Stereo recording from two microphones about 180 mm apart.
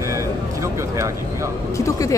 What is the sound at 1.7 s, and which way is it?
Speech, 20° left (ahead or behind).